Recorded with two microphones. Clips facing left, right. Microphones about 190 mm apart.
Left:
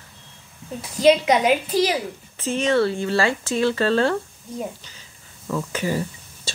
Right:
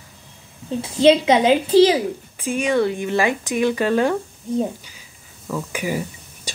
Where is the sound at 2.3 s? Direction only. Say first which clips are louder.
Even; 10° right (ahead or behind).